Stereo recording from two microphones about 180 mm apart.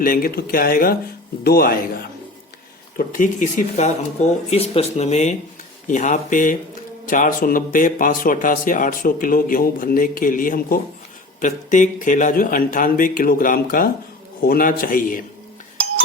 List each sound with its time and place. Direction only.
0.0 s speech: 50° left (ahead or behind)
3.1 s speech: 45° left (ahead or behind)